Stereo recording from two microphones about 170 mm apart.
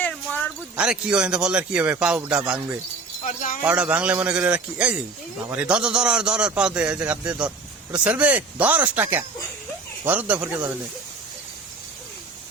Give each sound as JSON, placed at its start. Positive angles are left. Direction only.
{"t": 0.0, "sound": "wind chime", "side_deg": 10}
{"t": 0.8, "sound": "a man's voice", "side_deg": -5}
{"t": 3.2, "sound": "speech", "side_deg": 50}
{"t": 3.6, "sound": "a man's voice", "side_deg": -10}